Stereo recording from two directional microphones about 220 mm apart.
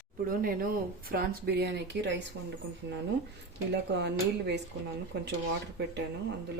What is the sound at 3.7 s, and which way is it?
Speech, 50° right (ahead or behind).